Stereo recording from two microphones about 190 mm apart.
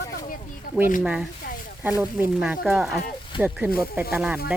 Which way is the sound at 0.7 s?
50° left (ahead or behind).